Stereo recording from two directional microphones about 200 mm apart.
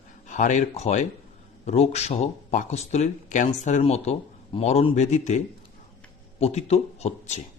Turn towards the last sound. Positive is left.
turn(degrees=35)  # may be behind; listen again after turning